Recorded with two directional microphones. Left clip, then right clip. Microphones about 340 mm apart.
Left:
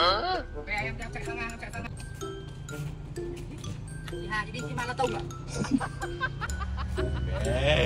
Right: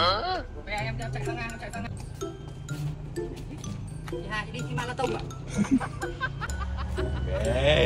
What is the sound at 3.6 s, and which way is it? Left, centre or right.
Music, centre.